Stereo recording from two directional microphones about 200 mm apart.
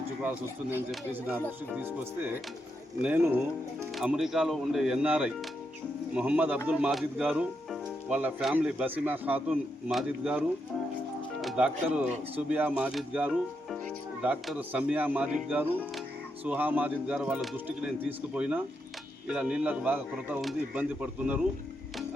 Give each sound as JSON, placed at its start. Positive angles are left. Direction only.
{"t": 0.2, "sound": "speech", "side_deg": -10}